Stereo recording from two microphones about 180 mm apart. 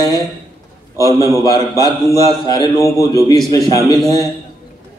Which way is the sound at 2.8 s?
15° left (ahead or behind).